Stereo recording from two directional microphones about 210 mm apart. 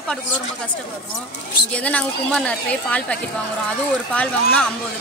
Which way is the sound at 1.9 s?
5° left (ahead or behind).